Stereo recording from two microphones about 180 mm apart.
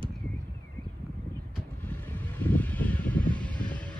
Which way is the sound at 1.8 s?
10° left (ahead or behind).